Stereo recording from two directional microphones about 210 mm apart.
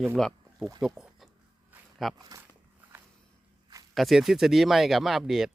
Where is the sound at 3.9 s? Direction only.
Centre (ahead or behind).